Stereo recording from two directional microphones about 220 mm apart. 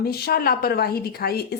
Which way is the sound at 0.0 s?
45° left (ahead or behind).